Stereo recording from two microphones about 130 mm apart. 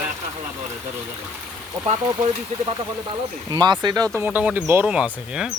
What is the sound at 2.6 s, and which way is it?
Speech, 35° right (ahead or behind).